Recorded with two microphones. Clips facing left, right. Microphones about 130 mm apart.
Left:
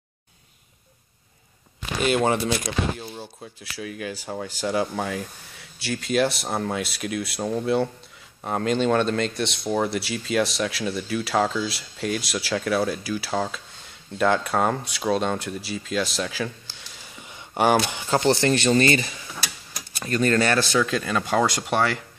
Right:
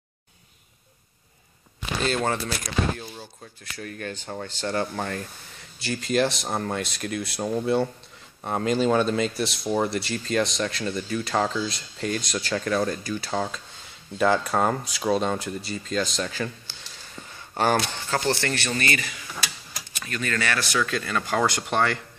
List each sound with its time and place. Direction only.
2.0 s speech: 10° left (ahead or behind)
3.6 s speech: 5° left (ahead or behind)